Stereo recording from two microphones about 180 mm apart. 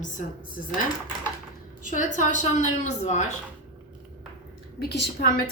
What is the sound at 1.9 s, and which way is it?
A woman's voice, 45° left (ahead or behind).